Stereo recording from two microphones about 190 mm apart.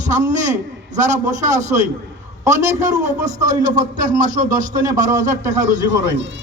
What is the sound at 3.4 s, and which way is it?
Speech, 40° right (ahead or behind).